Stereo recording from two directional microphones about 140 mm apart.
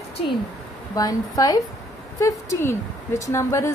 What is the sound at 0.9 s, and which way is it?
A woman's voice, 25° left (ahead or behind).